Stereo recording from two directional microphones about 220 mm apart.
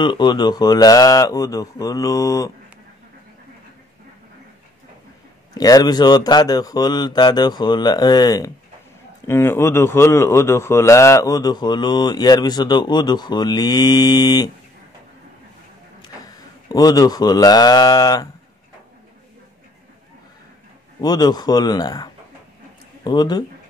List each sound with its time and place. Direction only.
0.0 s speech: 20° left (ahead or behind)
5.5 s speech: 15° left (ahead or behind)
16.0 s mantra: 15° left (ahead or behind)
21.0 s speech: 20° left (ahead or behind)